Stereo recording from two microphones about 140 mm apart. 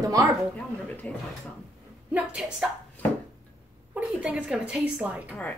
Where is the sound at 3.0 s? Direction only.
10° left (ahead or behind).